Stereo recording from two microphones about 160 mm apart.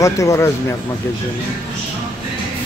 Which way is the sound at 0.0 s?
20° left (ahead or behind).